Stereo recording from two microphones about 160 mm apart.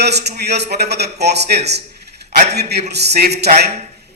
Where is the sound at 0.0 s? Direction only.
90° right.